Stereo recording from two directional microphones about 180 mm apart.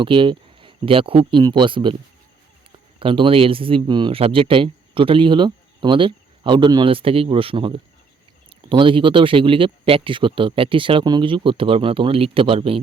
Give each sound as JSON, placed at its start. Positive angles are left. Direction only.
{"t": 0.0, "sound": "a man's voice", "side_deg": -30}
{"t": 3.0, "sound": "a man's voice", "side_deg": -30}